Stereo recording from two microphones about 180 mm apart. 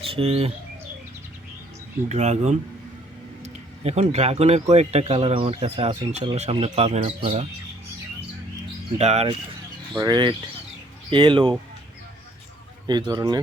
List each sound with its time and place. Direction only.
0.0 s speech: 30° right (ahead or behind)
2.0 s speech: 40° right (ahead or behind)
9.0 s speech: 35° right (ahead or behind)
10.0 s speech: 25° right (ahead or behind)
12.9 s speech: 25° right (ahead or behind)